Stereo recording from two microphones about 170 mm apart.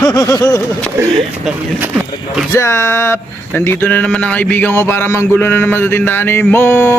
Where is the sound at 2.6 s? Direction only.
15° left (ahead or behind).